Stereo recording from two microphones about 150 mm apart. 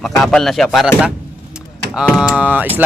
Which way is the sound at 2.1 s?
5° right (ahead or behind).